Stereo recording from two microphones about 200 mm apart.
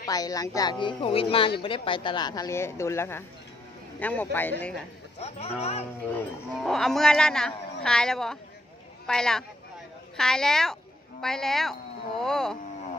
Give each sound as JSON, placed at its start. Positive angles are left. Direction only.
{"t": 0.0, "sound": "a woman's voice", "side_deg": 20}
{"t": 5.2, "sound": "speech", "side_deg": 30}
{"t": 6.1, "sound": "a woman's voice", "side_deg": 0}